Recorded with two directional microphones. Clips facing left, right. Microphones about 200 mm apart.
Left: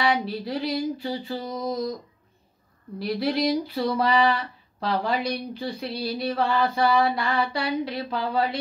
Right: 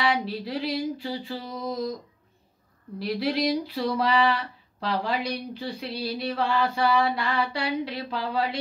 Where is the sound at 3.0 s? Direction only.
45° left (ahead or behind).